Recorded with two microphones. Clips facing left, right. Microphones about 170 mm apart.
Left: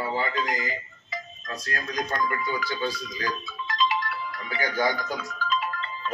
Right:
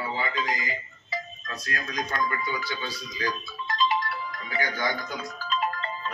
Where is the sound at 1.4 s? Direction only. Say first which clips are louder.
Left 1 dB; 40° left (ahead or behind).